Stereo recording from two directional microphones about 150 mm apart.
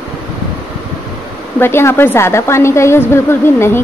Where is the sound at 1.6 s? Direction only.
15° left (ahead or behind).